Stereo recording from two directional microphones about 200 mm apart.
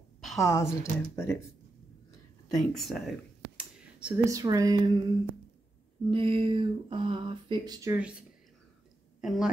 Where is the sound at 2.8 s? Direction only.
Centre (ahead or behind).